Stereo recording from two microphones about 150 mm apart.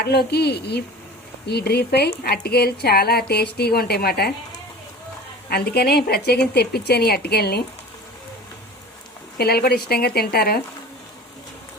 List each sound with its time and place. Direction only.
0.0 s speech: 90° left
5.5 s speech: 90° left
9.4 s speech: 90° left